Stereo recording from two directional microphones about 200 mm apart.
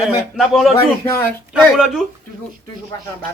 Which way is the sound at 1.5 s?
Centre (ahead or behind).